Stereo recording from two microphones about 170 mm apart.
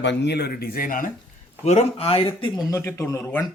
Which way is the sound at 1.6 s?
40° left (ahead or behind).